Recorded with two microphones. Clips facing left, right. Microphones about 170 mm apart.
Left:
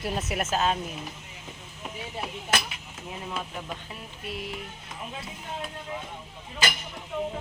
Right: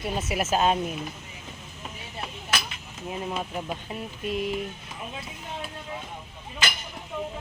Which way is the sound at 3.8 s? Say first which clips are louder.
Right 7 dB; 20° right (ahead or behind).